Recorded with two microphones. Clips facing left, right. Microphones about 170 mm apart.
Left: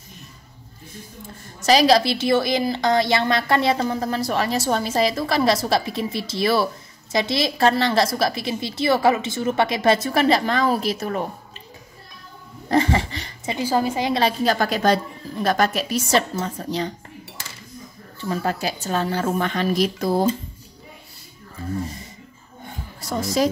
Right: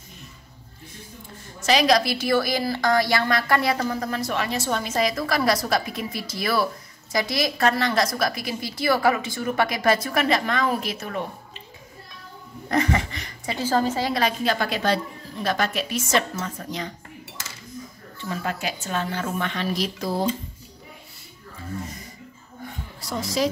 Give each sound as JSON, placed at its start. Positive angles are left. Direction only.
{"t": 1.6, "sound": "a woman's voice", "side_deg": 35}
{"t": 12.6, "sound": "a sound", "side_deg": 30}
{"t": 13.6, "sound": "a woman's voice", "side_deg": 10}
{"t": 14.4, "sound": "a woman's voice", "side_deg": 40}
{"t": 18.3, "sound": "a woman's voice", "side_deg": 35}
{"t": 22.9, "sound": "a woman's voice", "side_deg": 45}